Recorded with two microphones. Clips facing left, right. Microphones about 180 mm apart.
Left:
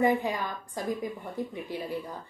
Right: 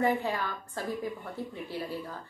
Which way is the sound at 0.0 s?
15° left (ahead or behind).